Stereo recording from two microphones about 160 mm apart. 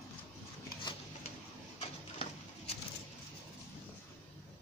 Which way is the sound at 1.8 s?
40° left (ahead or behind).